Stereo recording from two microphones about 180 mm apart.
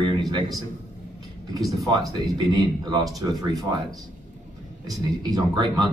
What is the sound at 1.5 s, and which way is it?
Speech, 20° right (ahead or behind).